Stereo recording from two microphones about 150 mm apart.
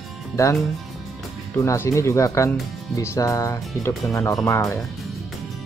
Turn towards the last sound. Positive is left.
turn(degrees=20)  # may be behind; listen again after turning